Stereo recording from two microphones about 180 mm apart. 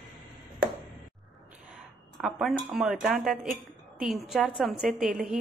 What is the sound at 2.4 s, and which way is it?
Speech, 5° right (ahead or behind).